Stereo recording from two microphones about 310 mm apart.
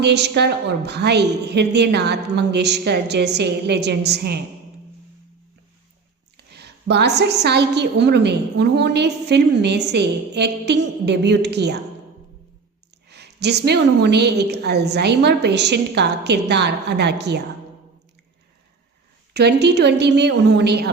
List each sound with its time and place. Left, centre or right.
0.0 s a woman's voice: right
6.3 s a woman's voice: right
13.1 s a woman's voice: right
19.3 s a woman's voice: right